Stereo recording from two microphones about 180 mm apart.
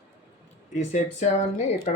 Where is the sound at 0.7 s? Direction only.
40° left (ahead or behind).